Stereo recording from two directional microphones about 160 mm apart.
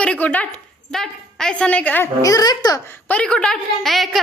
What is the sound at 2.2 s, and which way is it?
Speech, 25° left (ahead or behind).